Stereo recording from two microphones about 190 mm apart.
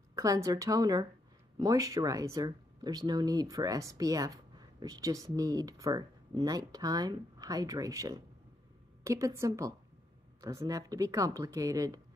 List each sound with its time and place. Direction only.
0.1 s speech: 15° right (ahead or behind)